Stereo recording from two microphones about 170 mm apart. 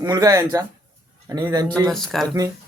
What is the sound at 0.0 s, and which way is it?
Speech, 20° right (ahead or behind).